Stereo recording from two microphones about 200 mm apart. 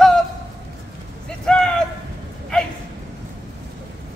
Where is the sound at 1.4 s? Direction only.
5° left (ahead or behind).